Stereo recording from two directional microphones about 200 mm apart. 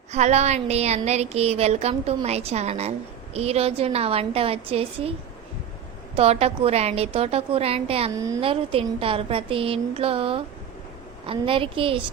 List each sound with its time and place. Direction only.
0.1 s a woman's voice: 35° right (ahead or behind)
6.1 s a woman's voice: 30° right (ahead or behind)
8.1 s a woman's voice: 15° right (ahead or behind)
8.4 s a woman's voice: 30° right (ahead or behind)